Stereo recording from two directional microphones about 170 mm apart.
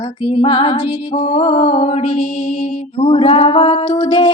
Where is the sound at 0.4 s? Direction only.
30° left (ahead or behind).